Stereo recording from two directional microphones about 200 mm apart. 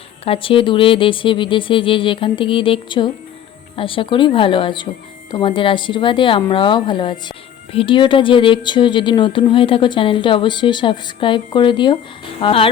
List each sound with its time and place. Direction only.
0.3 s speech: 25° left (ahead or behind)